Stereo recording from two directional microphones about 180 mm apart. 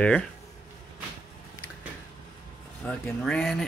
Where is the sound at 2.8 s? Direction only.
5° left (ahead or behind).